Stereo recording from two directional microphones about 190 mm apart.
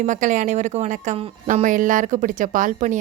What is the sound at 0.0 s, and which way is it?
Speech, 40° right (ahead or behind).